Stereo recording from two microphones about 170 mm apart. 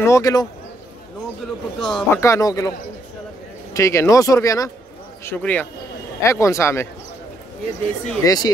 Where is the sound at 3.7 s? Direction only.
15° left (ahead or behind).